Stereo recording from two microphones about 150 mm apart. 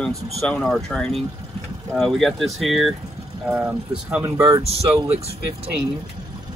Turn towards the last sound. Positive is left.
turn(degrees=-45)  # may be behind; listen again after turning